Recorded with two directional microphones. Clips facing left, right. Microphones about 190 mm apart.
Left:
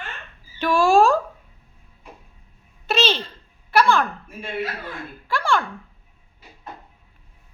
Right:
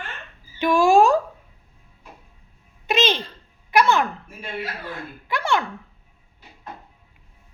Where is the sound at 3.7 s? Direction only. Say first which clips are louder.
Even; 20° right (ahead or behind).